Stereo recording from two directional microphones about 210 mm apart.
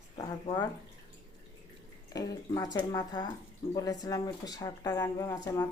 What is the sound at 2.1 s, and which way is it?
Speech, 15° left (ahead or behind).